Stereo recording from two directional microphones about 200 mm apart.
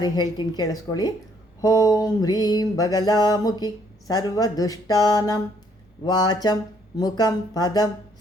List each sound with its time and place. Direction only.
0.0 s mantra: 20° left (ahead or behind)